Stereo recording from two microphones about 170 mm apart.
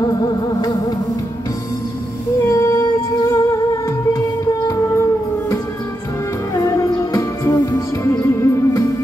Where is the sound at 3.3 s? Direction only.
20° left (ahead or behind).